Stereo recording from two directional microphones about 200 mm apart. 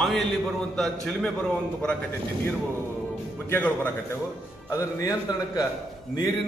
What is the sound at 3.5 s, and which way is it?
A man's voice, 10° left (ahead or behind).